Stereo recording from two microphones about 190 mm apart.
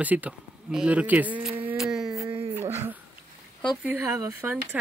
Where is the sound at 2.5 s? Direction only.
15° right (ahead or behind).